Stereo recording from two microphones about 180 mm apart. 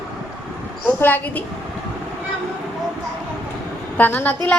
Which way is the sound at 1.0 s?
10° left (ahead or behind).